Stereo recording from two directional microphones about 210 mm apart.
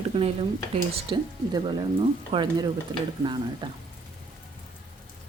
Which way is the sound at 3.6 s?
25° right (ahead or behind).